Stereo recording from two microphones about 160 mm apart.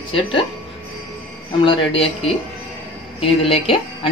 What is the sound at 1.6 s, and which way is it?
A man's voice, 35° left (ahead or behind).